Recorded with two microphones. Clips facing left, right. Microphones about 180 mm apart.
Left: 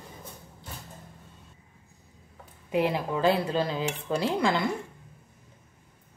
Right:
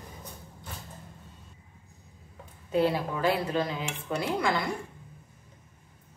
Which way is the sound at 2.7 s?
20° left (ahead or behind).